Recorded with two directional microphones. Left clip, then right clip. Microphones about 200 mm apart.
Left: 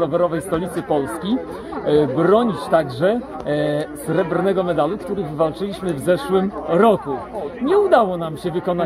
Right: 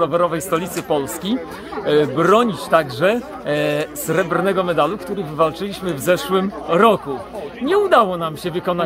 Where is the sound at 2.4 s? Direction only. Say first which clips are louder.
Right 1 dB; 45° right (ahead or behind).